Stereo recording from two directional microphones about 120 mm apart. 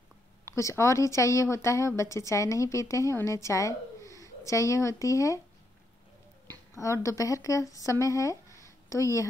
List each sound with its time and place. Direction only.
0.5 s a woman's voice: 25° left (ahead or behind)
6.5 s speech: 25° left (ahead or behind)